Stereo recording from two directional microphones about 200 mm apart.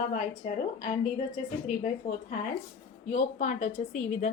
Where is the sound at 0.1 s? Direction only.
40° left (ahead or behind).